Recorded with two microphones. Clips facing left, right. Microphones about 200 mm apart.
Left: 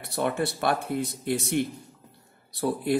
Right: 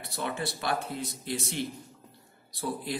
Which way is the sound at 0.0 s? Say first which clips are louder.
Left 7 dB; 60° left (ahead or behind).